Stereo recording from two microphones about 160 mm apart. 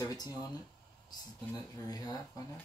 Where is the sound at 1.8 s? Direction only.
25° left (ahead or behind).